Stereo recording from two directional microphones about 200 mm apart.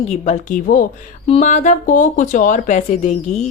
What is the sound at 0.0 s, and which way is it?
Speech, 30° left (ahead or behind).